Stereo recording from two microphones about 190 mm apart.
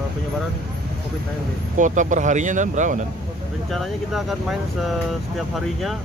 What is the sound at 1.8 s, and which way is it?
Speech, 40° right (ahead or behind).